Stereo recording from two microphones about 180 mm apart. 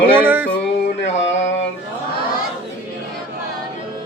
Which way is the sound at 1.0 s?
90° left.